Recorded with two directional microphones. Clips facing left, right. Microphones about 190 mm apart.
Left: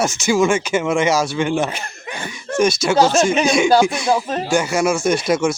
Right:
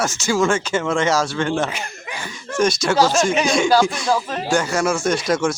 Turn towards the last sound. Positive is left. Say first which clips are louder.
# left 2 dB
turn(degrees=5)  # may be behind; listen again after turning